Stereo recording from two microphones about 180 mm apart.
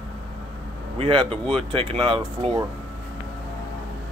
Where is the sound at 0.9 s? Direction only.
30° right (ahead or behind).